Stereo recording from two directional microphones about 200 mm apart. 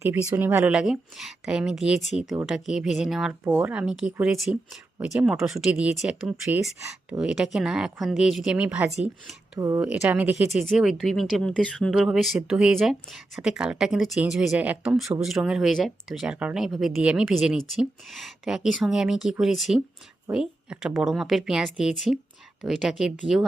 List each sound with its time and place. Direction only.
0.0 s a woman's voice: 10° right (ahead or behind)